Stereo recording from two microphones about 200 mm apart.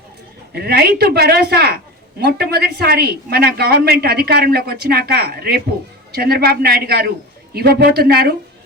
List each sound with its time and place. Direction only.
0.5 s a woman's voice: 50° right (ahead or behind)